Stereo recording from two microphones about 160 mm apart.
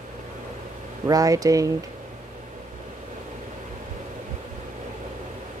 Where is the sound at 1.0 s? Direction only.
20° right (ahead or behind).